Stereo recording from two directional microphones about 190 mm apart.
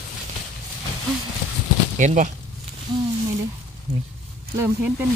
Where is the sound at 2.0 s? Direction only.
40° right (ahead or behind).